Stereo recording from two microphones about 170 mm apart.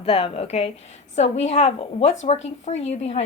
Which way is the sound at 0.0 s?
35° left (ahead or behind).